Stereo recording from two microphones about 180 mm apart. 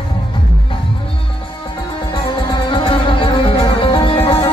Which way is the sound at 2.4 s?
30° left (ahead or behind).